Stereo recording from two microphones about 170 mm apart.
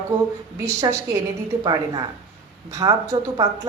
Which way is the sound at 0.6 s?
20° right (ahead or behind).